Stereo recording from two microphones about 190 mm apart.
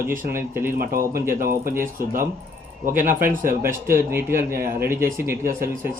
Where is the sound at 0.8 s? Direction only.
50° right (ahead or behind).